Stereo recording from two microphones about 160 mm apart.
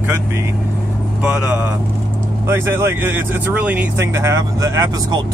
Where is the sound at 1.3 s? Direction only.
10° right (ahead or behind).